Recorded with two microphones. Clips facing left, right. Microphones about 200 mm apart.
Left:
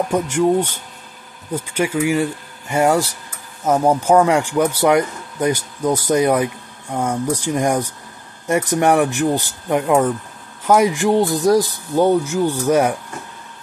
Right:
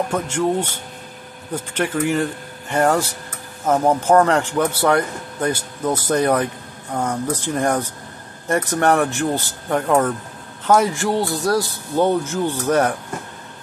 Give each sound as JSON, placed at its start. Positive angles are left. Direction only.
{"t": 0.1, "sound": "a man's voice", "side_deg": 15}